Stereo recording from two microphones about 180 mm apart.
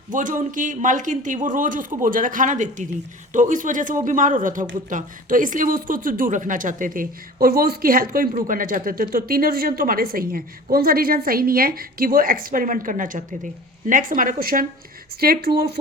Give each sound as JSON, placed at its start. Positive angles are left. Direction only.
{"t": 0.1, "sound": "speech", "side_deg": -45}